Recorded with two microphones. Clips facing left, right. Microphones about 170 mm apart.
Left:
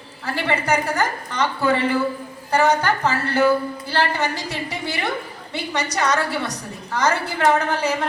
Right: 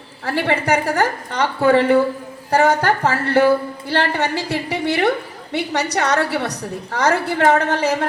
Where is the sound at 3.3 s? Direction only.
60° right (ahead or behind).